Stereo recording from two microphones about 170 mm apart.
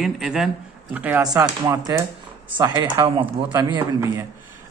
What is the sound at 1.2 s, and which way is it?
Speech, 20° right (ahead or behind).